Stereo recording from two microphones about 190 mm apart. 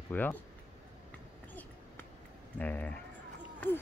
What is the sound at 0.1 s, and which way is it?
Speech, 10° left (ahead or behind).